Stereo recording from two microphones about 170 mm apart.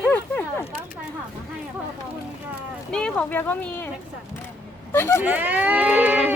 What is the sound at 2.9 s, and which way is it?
Speech, 5° left (ahead or behind).